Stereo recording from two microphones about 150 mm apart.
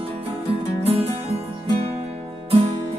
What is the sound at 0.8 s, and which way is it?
Music, 40° right (ahead or behind).